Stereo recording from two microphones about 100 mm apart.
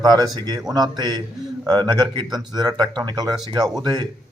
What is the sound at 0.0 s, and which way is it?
Speech, 40° right (ahead or behind).